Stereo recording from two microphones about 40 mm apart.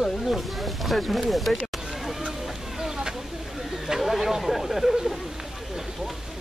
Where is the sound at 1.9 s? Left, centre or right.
Centre.